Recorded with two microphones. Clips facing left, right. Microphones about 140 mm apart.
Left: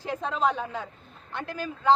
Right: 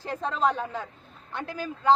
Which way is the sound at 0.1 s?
Centre (ahead or behind).